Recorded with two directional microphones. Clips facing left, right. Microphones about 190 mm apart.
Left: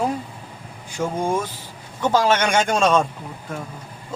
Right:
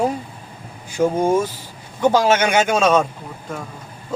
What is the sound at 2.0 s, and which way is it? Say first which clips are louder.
A man's voice: right 3 dB; 10° right (ahead or behind).